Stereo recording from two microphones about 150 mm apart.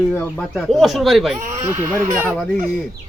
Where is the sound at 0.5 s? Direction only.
Centre (ahead or behind).